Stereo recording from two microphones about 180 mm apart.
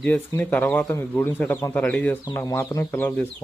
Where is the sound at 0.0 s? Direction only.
10° left (ahead or behind).